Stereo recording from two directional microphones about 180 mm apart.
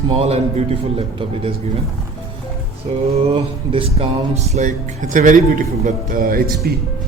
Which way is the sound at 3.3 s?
30° right (ahead or behind).